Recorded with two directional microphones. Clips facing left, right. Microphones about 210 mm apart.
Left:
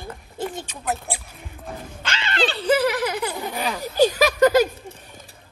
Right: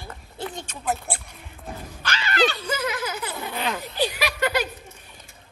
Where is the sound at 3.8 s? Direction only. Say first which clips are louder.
Left 13 dB; 45° left (ahead or behind).